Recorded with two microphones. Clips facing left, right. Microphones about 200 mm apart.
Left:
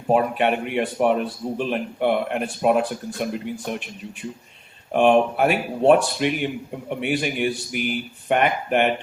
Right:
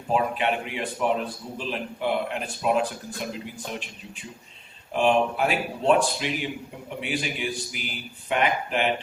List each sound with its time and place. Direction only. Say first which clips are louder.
0.1 s a man's voice: left 5 dB; 55° left (ahead or behind)
4.9 s a man's voice: left 5 dB; 55° left (ahead or behind)